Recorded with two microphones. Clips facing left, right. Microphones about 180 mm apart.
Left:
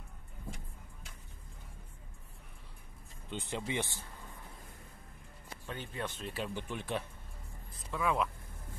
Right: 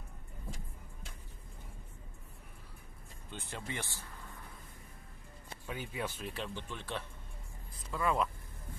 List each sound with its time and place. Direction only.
3.3 s speech: 15° left (ahead or behind)
5.7 s speech: 10° right (ahead or behind)
6.3 s speech: 10° left (ahead or behind)
7.7 s speech: centre (ahead or behind)